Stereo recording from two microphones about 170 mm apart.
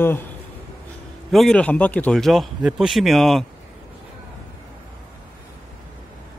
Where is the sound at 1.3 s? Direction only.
Centre (ahead or behind).